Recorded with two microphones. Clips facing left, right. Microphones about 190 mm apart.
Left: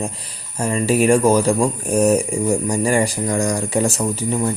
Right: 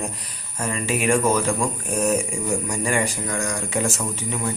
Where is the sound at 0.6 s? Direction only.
35° left (ahead or behind).